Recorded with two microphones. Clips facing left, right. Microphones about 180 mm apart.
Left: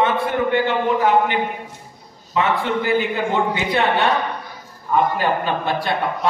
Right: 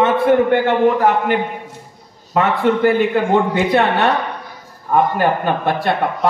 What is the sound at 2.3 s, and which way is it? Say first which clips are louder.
Speech: right 3 dB; 50° right (ahead or behind).